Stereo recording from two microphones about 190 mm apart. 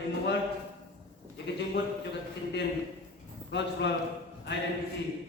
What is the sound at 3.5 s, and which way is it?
Speech, 65° left (ahead or behind).